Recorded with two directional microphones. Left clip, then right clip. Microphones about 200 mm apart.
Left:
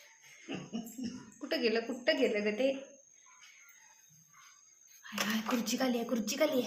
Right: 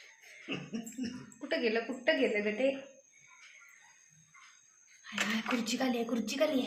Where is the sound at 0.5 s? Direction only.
45° right (ahead or behind).